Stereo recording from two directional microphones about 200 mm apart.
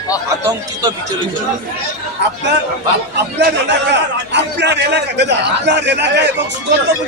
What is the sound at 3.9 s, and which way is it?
A man's voice, 60° right (ahead or behind).